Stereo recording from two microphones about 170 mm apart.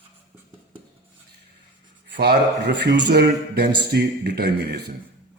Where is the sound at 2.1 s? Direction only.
75° right (ahead or behind).